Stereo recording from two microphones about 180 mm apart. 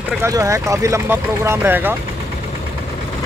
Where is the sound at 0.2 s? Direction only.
15° right (ahead or behind).